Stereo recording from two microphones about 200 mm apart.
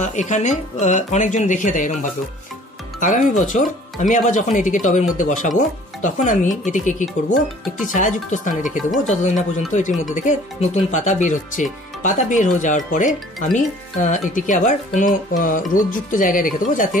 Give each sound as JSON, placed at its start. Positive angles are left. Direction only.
{"t": 0.0, "sound": "speech", "side_deg": 35}
{"t": 3.0, "sound": "speech", "side_deg": 40}